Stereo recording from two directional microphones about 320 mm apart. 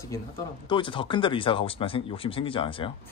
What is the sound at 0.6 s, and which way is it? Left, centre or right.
Speech, centre.